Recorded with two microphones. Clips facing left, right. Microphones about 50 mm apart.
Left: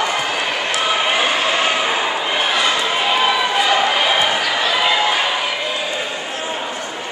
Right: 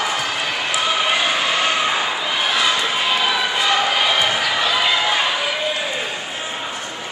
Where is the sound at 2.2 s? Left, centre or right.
Centre.